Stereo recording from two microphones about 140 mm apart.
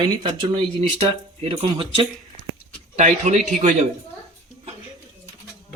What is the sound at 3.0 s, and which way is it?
Speech, 55° right (ahead or behind).